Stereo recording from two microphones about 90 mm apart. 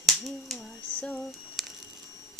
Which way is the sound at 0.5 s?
15° left (ahead or behind).